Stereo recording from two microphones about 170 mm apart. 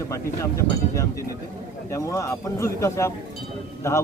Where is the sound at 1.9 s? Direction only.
15° left (ahead or behind).